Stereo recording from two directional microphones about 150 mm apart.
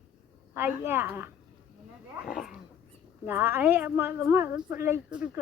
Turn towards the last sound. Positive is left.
turn(degrees=-15)  # may be behind; listen again after turning